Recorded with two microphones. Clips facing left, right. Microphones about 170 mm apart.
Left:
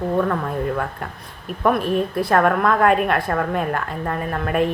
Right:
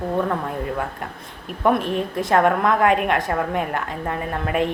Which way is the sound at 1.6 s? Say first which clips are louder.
Left 1 dB; 20° right (ahead or behind).